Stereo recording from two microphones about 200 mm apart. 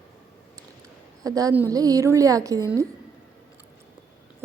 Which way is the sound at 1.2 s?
20° right (ahead or behind).